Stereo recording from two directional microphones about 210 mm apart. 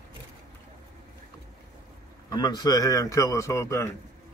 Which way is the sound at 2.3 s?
20° left (ahead or behind).